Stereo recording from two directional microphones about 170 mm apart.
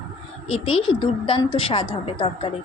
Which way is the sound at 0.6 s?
30° left (ahead or behind).